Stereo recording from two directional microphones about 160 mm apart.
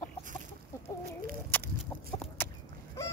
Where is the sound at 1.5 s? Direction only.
10° left (ahead or behind).